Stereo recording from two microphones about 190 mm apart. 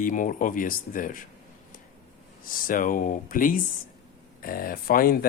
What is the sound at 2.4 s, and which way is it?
Speech, 45° left (ahead or behind).